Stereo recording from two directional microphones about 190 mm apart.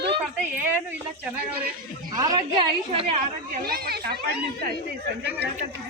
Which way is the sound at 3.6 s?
55° right (ahead or behind).